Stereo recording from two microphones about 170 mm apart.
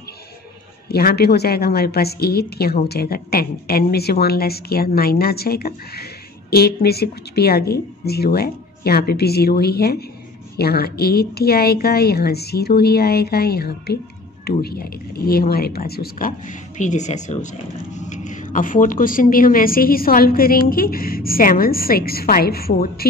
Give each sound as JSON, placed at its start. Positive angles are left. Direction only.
{"t": 0.8, "sound": "a woman's voice", "side_deg": 65}